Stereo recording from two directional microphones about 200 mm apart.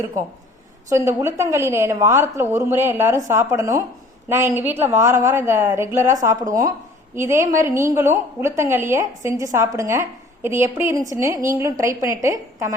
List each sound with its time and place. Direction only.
0.9 s a woman's voice: 15° right (ahead or behind)